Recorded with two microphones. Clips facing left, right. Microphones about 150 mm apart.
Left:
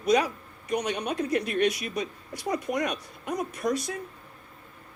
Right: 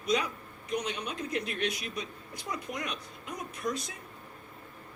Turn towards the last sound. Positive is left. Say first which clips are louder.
# left 6 dB
turn(degrees=75)  # may be behind; listen again after turning